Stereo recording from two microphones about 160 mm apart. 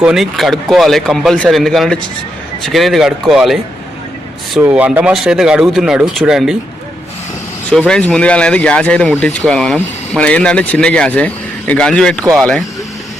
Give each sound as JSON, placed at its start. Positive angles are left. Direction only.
{"t": 0.0, "sound": "speech", "side_deg": -5}
{"t": 4.6, "sound": "speech", "side_deg": -10}
{"t": 7.7, "sound": "speech", "side_deg": 5}